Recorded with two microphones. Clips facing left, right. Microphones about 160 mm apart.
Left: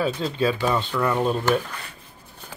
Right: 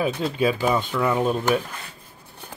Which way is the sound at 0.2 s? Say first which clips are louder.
Right 1 dB; 15° right (ahead or behind).